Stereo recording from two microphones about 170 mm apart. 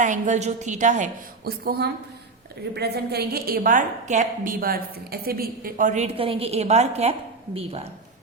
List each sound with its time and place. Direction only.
0.0 s a woman's voice: 45° right (ahead or behind)
1.5 s a woman's voice: 65° right (ahead or behind); by 4.5 s 45° right (ahead or behind)
4.6 s a woman's voice: 65° right (ahead or behind); by 7.8 s 35° right (ahead or behind)